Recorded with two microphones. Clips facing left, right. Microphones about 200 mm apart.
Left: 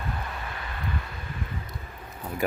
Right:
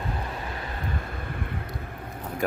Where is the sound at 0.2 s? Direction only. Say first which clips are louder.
Right 3 dB; 35° right (ahead or behind); by 1.7 s 60° right (ahead or behind).